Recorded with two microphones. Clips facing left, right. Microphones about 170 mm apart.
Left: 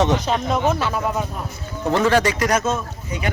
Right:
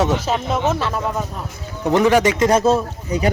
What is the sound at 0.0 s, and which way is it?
A child's voice, 5° right (ahead or behind).